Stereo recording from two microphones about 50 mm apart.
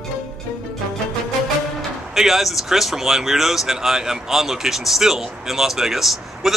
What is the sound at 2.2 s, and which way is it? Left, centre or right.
Speech, centre.